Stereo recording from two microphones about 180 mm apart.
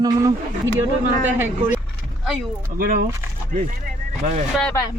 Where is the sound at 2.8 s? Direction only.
50° right (ahead or behind).